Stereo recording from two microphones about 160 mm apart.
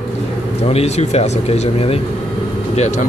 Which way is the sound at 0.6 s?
40° left (ahead or behind).